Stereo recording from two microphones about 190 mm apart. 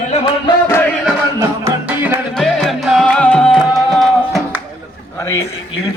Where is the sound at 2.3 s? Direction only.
Centre (ahead or behind).